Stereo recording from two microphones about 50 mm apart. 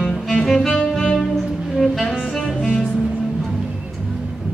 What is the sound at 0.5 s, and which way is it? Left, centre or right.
Music, centre.